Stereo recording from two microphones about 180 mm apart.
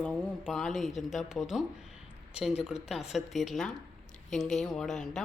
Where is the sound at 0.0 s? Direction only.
5° left (ahead or behind).